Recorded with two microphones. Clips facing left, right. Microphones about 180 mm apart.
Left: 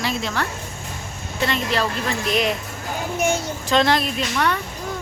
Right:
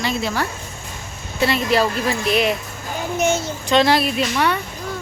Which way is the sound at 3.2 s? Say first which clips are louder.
Right 2 dB; 10° left (ahead or behind).